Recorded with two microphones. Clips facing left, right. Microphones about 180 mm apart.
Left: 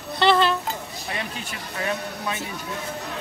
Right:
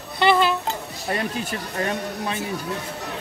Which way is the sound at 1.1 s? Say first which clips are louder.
Right 7 dB; 40° right (ahead or behind).